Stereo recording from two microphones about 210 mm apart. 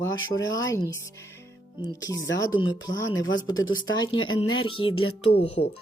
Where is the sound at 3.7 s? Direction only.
65° left (ahead or behind).